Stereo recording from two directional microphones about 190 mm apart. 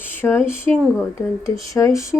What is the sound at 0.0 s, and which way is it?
Speech, 10° left (ahead or behind).